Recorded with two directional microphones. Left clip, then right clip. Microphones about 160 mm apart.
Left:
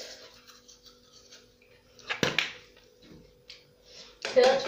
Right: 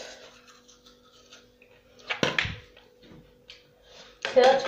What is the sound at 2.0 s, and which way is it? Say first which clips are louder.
Dog: right 2 dB; 35° left (ahead or behind).